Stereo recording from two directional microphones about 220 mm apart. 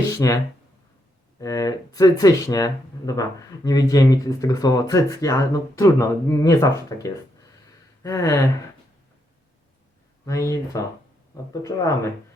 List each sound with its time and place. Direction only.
0.1 s a sound: 15° left (ahead or behind)
1.4 s speech: 15° left (ahead or behind)
10.2 s speech: 15° left (ahead or behind)